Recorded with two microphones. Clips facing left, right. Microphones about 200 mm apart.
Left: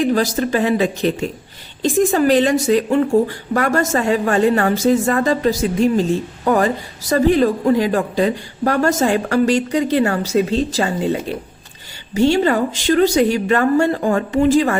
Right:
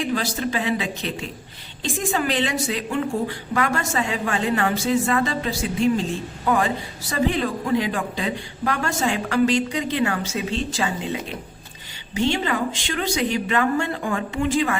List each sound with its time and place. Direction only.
0.0 s a woman's voice: 45° left (ahead or behind)